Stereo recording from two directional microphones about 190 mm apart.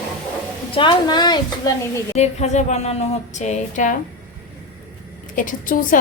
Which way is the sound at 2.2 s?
35° left (ahead or behind).